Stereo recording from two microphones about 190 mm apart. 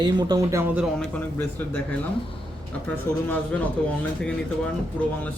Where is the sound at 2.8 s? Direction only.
10° left (ahead or behind).